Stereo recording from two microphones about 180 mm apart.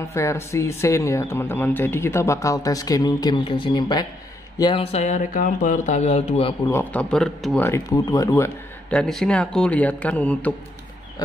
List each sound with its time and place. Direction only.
0.1 s speech: 15° left (ahead or behind)
4.9 s speech: 40° left (ahead or behind)
6.7 s speech: 10° left (ahead or behind)
8.9 s speech: 5° left (ahead or behind)